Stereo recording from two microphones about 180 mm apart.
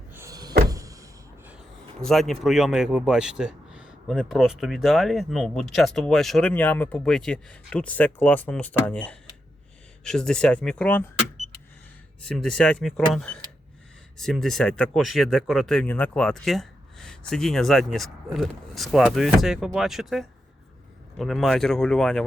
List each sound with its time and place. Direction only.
0.1 s power windows: 15° right (ahead or behind)
2.0 s speech: centre (ahead or behind)
12.2 s speech: 5° left (ahead or behind)